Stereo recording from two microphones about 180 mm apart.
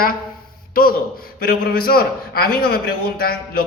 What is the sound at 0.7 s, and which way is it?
A man's voice, 55° left (ahead or behind).